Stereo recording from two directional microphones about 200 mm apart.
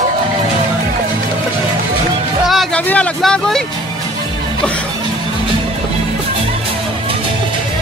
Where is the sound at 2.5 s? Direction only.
Centre (ahead or behind).